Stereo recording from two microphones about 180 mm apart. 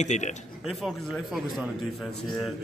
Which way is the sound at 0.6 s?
Centre (ahead or behind).